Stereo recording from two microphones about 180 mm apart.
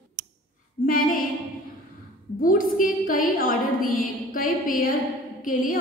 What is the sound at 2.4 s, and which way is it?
A woman's voice, 50° left (ahead or behind).